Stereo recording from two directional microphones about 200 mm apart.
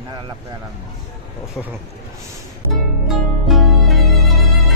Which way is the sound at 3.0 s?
Centre (ahead or behind).